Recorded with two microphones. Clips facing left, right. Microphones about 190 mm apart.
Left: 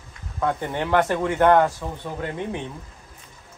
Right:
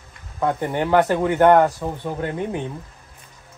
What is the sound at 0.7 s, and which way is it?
Speech, 10° right (ahead or behind).